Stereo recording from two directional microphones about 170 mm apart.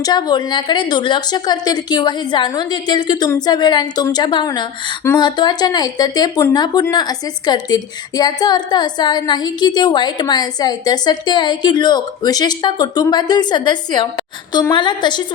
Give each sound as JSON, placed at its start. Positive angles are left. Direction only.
{"t": 0.0, "sound": "speech", "side_deg": 25}